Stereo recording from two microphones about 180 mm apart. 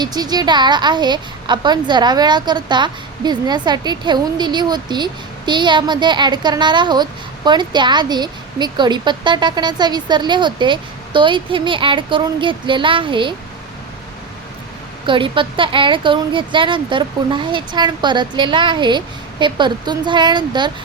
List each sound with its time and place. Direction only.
0.0 s a woman's voice: 20° right (ahead or behind)
15.0 s a woman's voice: 30° right (ahead or behind)